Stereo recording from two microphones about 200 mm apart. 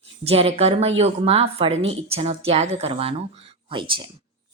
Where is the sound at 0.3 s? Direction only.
30° right (ahead or behind).